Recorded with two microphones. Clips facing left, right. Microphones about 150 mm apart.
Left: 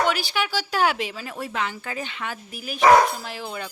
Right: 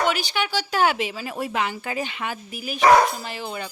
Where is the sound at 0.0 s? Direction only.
Centre (ahead or behind).